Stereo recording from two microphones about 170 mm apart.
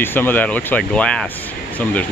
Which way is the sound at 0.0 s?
10° left (ahead or behind).